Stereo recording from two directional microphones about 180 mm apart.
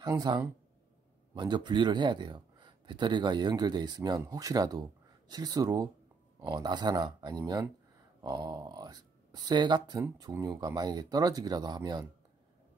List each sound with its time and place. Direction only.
0.0 s speech: 20° right (ahead or behind)